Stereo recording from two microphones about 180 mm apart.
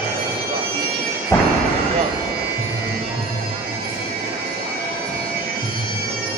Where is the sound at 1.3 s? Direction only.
15° left (ahead or behind).